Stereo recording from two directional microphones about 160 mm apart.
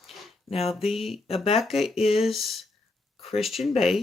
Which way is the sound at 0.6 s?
Centre (ahead or behind).